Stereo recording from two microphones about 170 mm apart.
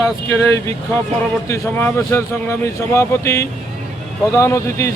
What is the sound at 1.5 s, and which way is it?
Speech, 15° left (ahead or behind).